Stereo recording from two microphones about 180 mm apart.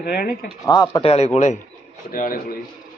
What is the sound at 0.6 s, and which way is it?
Speech, 20° left (ahead or behind).